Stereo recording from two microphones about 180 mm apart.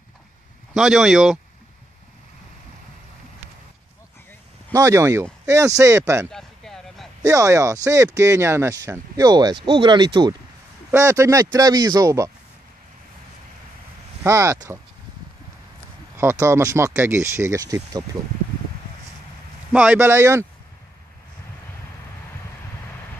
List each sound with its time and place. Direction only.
0.7 s speech: 5° right (ahead or behind)
4.7 s speech: 15° right (ahead or behind)
6.3 s a sound: centre (ahead or behind)
7.2 s speech: 15° right (ahead or behind)
10.9 s speech: 15° right (ahead or behind)
14.2 s speech: 15° right (ahead or behind)
16.2 s speech: 15° right (ahead or behind)
19.7 s speech: 10° right (ahead or behind)